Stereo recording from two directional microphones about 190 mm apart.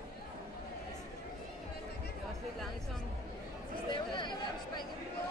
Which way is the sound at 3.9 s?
25° left (ahead or behind).